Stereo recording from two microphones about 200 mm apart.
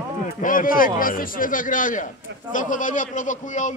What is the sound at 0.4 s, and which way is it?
A man's voice, 45° left (ahead or behind).